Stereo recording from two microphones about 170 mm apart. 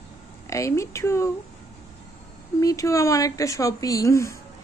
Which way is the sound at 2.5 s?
20° left (ahead or behind).